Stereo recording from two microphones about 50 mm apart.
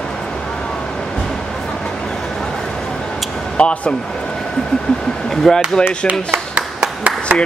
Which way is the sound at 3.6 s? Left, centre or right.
Left.